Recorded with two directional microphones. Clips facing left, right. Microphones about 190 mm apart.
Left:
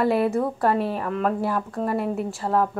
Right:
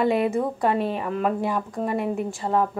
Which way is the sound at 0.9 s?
10° right (ahead or behind).